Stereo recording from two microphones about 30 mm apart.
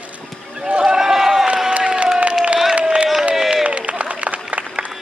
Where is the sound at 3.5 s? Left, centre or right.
Right.